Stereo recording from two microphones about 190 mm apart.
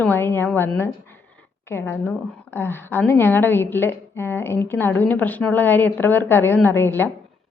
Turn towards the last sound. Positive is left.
turn(degrees=10)  # may be behind; listen again after turning